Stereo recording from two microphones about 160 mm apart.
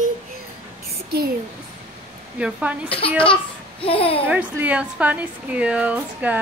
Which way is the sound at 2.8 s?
35° left (ahead or behind).